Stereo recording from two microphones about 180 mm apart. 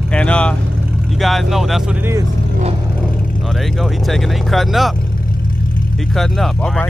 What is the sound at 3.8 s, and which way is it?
Speech, centre (ahead or behind).